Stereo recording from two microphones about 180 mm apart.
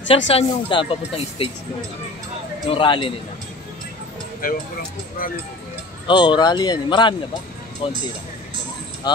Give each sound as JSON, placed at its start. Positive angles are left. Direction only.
{"t": 0.3, "sound": "speech", "side_deg": 30}
{"t": 2.6, "sound": "speech", "side_deg": 25}
{"t": 4.4, "sound": "speech", "side_deg": 55}
{"t": 6.0, "sound": "speech", "side_deg": 25}
{"t": 9.0, "sound": "speech", "side_deg": 25}